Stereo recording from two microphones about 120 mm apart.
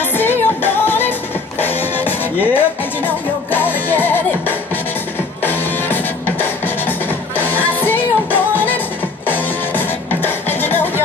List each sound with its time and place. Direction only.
0.1 s music: 15° left (ahead or behind)